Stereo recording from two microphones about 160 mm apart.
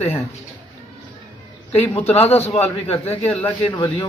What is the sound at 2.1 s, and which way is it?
Speech, 40° left (ahead or behind).